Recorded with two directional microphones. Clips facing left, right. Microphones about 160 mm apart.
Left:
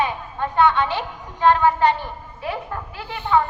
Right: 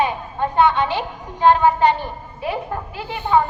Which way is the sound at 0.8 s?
20° right (ahead or behind).